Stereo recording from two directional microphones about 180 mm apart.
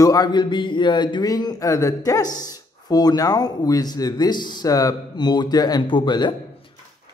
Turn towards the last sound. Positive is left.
turn(degrees=25)  # may be behind; listen again after turning